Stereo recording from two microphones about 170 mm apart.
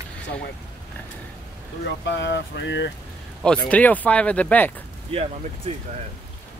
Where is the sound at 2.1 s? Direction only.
90° left.